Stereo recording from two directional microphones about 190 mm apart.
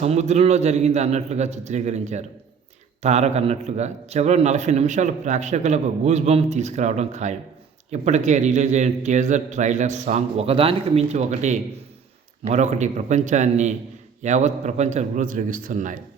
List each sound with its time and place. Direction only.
0.0 s a man's voice: 35° right (ahead or behind)